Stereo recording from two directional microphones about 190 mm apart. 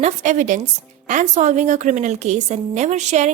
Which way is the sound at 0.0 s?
40° right (ahead or behind).